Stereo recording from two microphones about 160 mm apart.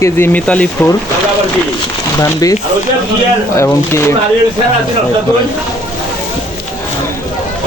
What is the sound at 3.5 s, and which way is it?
Speech, 15° left (ahead or behind).